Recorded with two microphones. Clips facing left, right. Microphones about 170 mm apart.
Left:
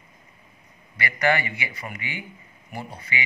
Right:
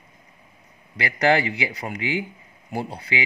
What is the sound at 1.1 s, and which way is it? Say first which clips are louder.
Speech: right 4 dB; 70° right (ahead or behind).